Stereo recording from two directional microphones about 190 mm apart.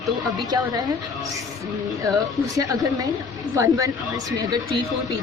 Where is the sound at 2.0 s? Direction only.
20° right (ahead or behind).